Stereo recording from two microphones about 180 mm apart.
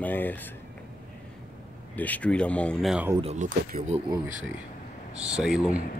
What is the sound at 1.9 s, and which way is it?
Speech, 10° left (ahead or behind).